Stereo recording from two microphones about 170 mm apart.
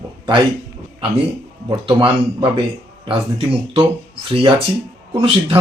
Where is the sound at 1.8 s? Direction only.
30° right (ahead or behind).